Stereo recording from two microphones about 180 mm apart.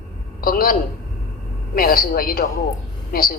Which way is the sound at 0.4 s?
50° left (ahead or behind).